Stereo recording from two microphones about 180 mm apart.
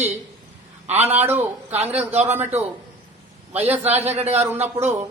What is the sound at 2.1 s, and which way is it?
Speech, 35° right (ahead or behind).